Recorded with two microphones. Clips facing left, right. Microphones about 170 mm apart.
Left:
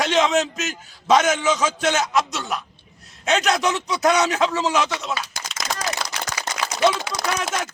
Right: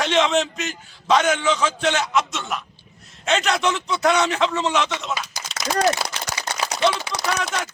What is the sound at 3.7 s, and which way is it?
Music, centre (ahead or behind).